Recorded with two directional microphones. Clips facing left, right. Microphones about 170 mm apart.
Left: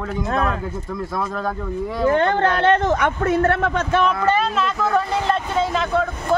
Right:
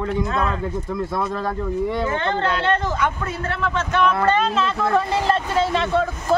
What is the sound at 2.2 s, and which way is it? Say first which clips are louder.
Speech: left 4 dB; 55° left (ahead or behind).